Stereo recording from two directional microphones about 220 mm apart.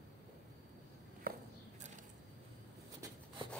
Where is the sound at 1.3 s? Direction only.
40° right (ahead or behind).